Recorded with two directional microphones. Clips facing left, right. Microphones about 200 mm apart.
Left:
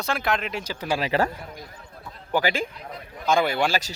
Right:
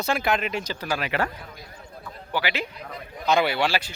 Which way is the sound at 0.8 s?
30° left (ahead or behind).